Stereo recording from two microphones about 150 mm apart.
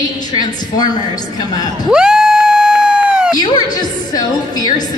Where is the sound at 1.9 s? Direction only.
5° right (ahead or behind).